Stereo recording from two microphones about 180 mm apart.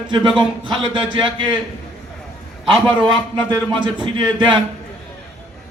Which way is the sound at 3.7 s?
25° right (ahead or behind).